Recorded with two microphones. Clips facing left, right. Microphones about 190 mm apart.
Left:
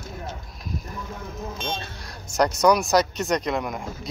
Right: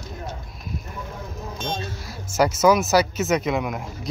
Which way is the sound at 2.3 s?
5° right (ahead or behind).